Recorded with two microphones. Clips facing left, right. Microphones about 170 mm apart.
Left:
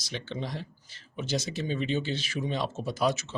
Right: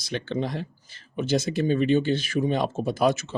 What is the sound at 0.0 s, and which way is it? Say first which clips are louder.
Speech: right 8 dB; 60° right (ahead or behind).